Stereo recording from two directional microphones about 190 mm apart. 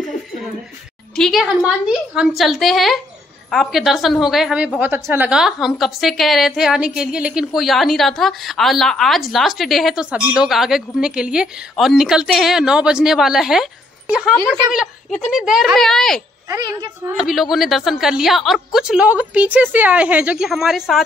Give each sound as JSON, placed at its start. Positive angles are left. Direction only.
{"t": 1.1, "sound": "a woman's voice", "side_deg": 0}
{"t": 16.4, "sound": "speech", "side_deg": -15}
{"t": 17.2, "sound": "a woman's voice", "side_deg": 0}